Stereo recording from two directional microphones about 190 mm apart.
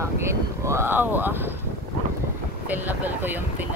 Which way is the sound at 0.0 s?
15° right (ahead or behind).